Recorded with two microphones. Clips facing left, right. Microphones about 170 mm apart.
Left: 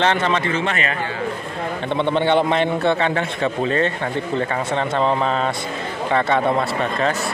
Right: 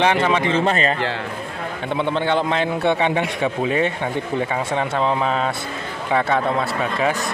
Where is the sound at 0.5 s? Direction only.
30° right (ahead or behind).